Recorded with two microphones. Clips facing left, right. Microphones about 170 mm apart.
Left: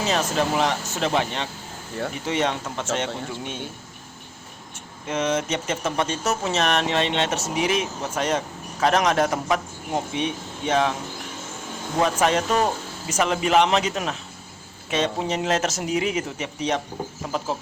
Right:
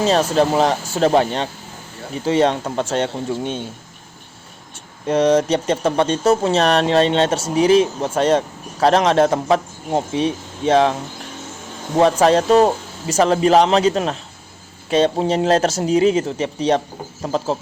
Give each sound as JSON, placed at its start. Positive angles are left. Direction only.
{"t": 0.0, "sound": "speech", "side_deg": -35}
{"t": 4.7, "sound": "speech", "side_deg": -35}
{"t": 11.9, "sound": "speech", "side_deg": -35}